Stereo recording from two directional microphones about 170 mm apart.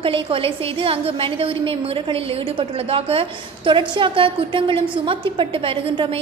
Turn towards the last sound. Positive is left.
turn(degrees=-30)  # may be behind; listen again after turning